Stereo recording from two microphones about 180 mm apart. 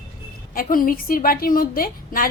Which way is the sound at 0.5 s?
50° left (ahead or behind).